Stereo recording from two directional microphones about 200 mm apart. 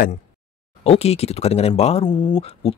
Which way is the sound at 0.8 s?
30° left (ahead or behind).